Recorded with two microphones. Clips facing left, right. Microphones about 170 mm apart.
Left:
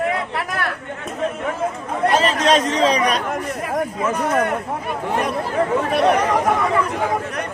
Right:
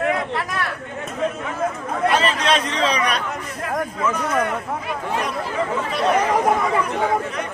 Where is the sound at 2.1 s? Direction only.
40° left (ahead or behind).